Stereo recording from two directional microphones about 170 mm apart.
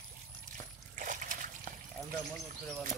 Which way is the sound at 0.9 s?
50° right (ahead or behind).